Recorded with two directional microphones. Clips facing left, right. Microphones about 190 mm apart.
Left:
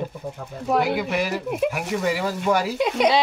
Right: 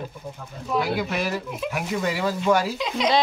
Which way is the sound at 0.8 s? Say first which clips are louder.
Left 2 dB; 10° left (ahead or behind).